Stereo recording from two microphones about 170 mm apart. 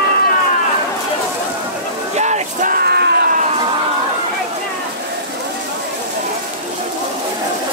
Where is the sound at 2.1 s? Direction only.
45° right (ahead or behind); by 3.2 s 70° right (ahead or behind).